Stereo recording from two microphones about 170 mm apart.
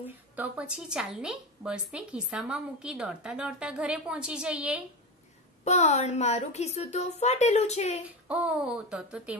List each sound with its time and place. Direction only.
0.0 s a woman's voice: 10° right (ahead or behind)
5.6 s a woman's voice: 40° left (ahead or behind)
8.3 s a woman's voice: 5° right (ahead or behind)